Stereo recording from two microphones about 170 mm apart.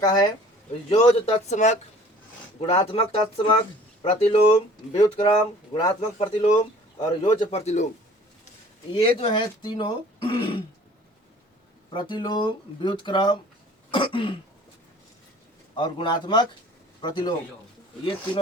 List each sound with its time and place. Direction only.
0.0 s speech: 25° left (ahead or behind)
0.9 s speech: 35° left (ahead or behind)
2.6 s speech: 30° left (ahead or behind)
8.9 s speech: 30° left (ahead or behind)
11.9 s speech: 25° left (ahead or behind)
15.7 s speech: 30° left (ahead or behind)